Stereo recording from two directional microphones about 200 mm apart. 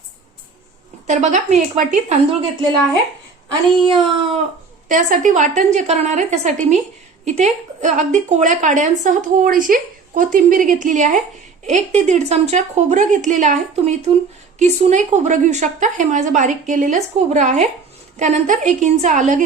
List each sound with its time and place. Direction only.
1.0 s a woman's voice: 35° right (ahead or behind)
3.8 s speech: 25° right (ahead or behind)
4.9 s a woman's voice: 40° right (ahead or behind)